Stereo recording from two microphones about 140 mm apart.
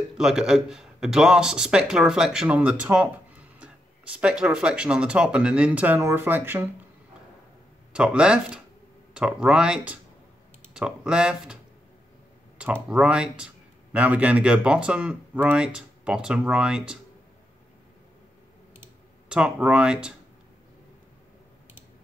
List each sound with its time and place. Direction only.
0.2 s a man's voice: 5° right (ahead or behind)
7.9 s speech: 5° right (ahead or behind)
12.5 s speech: 10° right (ahead or behind)
19.2 s speech: 5° right (ahead or behind)